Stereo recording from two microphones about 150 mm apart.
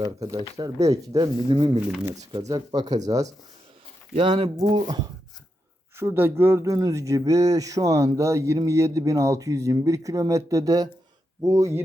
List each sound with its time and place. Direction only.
0.0 s speech: 25° right (ahead or behind)
4.1 s speech: 35° right (ahead or behind)
6.0 s speech: 15° right (ahead or behind)